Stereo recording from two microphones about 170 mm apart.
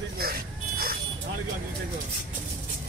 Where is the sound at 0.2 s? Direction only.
60° right (ahead or behind).